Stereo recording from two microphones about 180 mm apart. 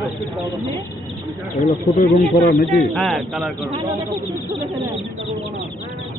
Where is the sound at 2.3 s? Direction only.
40° left (ahead or behind).